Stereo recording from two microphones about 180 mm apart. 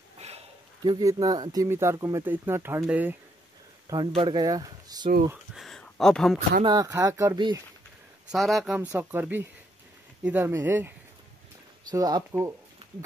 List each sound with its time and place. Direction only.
0.2 s a sound: 40° right (ahead or behind)
0.8 s speech: 20° right (ahead or behind)
3.9 s speech: 25° right (ahead or behind)
5.3 s speech: centre (ahead or behind)
6.6 s speech: 25° right (ahead or behind)
8.3 s speech: centre (ahead or behind)
11.9 s speech: 20° right (ahead or behind)